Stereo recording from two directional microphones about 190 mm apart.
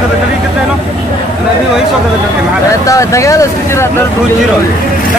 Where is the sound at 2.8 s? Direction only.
15° left (ahead or behind).